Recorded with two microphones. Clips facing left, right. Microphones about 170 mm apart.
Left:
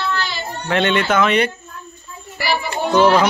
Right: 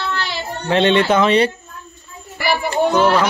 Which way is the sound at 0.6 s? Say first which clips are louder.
Right 3 dB; 30° right (ahead or behind).